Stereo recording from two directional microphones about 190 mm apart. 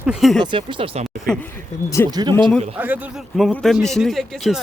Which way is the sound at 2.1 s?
20° right (ahead or behind).